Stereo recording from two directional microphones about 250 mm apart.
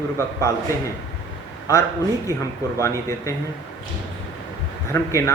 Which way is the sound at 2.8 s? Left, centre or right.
Centre.